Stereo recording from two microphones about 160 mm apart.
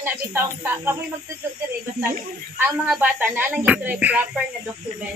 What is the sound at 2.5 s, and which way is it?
Speech, 10° right (ahead or behind).